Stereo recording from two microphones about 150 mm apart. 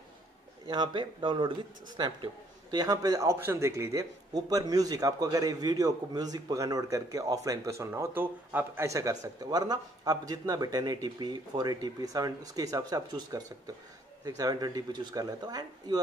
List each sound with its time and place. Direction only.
0.7 s a man's voice: 30° right (ahead or behind)